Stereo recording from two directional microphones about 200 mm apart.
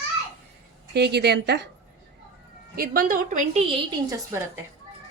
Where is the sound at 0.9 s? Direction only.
55° right (ahead or behind).